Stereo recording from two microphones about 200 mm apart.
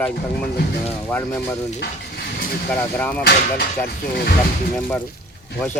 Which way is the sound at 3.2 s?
50° left (ahead or behind).